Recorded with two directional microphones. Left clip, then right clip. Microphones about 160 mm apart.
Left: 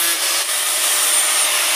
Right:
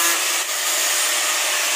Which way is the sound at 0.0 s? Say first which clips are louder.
Left 1 dB; centre (ahead or behind).